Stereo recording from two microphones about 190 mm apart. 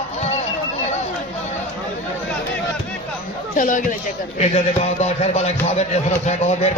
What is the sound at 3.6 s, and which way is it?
Speech, 45° left (ahead or behind).